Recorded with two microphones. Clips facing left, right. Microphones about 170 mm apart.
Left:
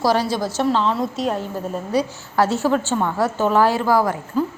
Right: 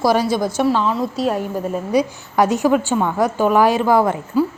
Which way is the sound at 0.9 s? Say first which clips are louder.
Right 2 dB; centre (ahead or behind).